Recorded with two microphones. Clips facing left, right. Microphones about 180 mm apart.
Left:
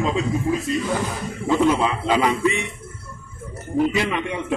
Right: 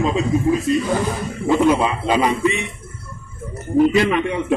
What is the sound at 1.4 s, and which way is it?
A man's voice, 15° right (ahead or behind).